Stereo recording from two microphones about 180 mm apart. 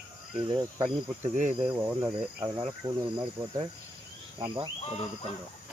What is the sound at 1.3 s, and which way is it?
Cricket, 45° right (ahead or behind).